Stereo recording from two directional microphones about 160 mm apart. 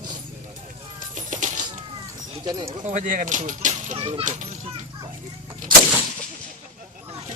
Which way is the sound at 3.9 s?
35° right (ahead or behind).